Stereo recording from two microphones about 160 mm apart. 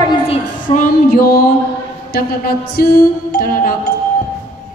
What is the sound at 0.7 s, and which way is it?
Music, 60° left (ahead or behind).